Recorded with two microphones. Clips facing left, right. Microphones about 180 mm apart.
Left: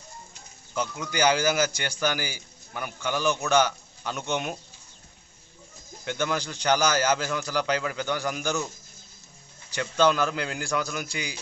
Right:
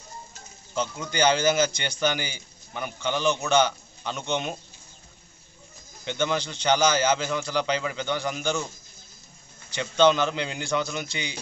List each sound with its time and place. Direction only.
0.7 s a man's voice: 10° left (ahead or behind)
6.0 s a man's voice: 5° left (ahead or behind)
9.8 s a man's voice: 5° left (ahead or behind)
11.0 s a man's voice: 25° right (ahead or behind)